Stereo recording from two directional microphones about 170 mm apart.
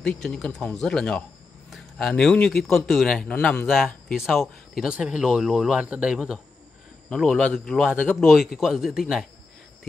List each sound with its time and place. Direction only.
0.0 s a man's voice: centre (ahead or behind)